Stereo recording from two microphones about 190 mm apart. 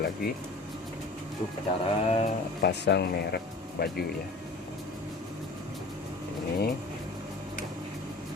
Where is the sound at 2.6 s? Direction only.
60° left (ahead or behind).